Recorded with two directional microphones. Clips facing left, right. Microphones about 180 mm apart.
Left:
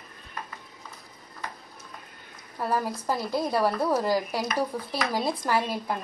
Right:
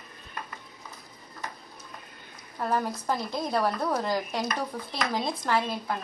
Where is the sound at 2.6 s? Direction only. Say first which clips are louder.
Even; 5° left (ahead or behind).